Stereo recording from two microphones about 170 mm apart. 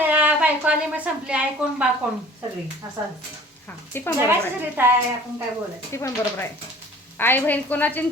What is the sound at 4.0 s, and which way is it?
Speech, 15° left (ahead or behind).